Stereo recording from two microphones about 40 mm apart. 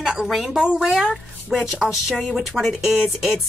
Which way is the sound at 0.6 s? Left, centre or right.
Right.